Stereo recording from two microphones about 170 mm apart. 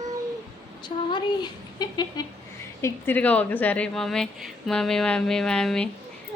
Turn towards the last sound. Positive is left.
turn(degrees=5)  # may be behind; listen again after turning